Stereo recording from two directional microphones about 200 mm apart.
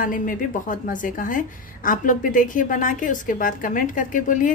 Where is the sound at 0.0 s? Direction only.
40° left (ahead or behind).